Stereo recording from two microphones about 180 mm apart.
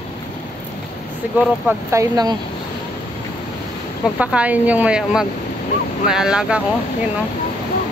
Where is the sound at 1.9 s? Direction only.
20° right (ahead or behind).